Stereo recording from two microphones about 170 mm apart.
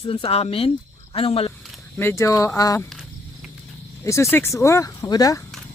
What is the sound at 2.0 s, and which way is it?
Speech, 15° left (ahead or behind).